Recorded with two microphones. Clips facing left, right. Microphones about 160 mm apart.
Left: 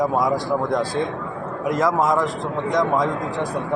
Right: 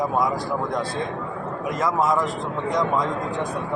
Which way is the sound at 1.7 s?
15° left (ahead or behind).